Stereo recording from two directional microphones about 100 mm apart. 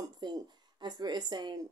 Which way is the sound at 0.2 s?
45° right (ahead or behind).